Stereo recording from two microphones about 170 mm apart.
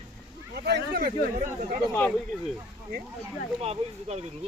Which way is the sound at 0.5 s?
70° right (ahead or behind).